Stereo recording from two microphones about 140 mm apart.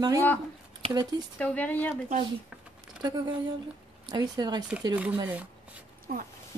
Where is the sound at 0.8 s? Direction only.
40° right (ahead or behind).